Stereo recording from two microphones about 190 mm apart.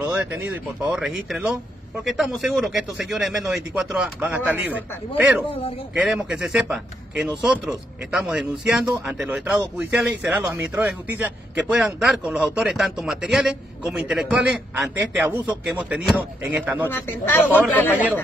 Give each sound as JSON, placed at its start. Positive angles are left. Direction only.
{"t": 0.0, "sound": "a sound", "side_deg": -10}
{"t": 0.8, "sound": "speech", "side_deg": -5}
{"t": 5.5, "sound": "speech", "side_deg": 30}
{"t": 5.9, "sound": "speech", "side_deg": -5}
{"t": 16.9, "sound": "speech", "side_deg": 10}